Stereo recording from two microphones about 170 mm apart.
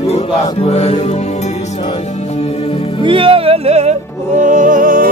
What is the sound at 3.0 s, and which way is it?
Speech, 30° right (ahead or behind).